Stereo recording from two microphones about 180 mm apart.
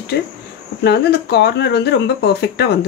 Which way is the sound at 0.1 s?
65° left (ahead or behind).